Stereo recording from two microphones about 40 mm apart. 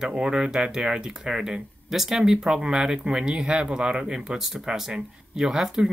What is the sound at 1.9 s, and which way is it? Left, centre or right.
Speech, centre.